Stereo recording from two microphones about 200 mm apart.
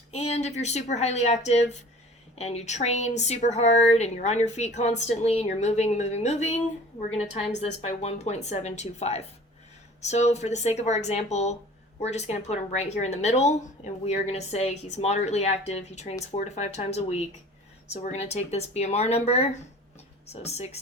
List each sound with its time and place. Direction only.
0.1 s speech: 35° left (ahead or behind)
7.6 s speech: 35° left (ahead or behind)